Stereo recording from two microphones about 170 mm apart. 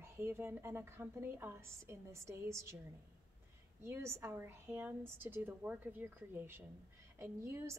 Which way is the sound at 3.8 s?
15° right (ahead or behind).